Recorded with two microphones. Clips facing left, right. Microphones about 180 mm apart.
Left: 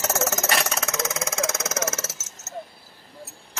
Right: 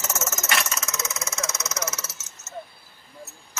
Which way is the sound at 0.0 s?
70° left (ahead or behind).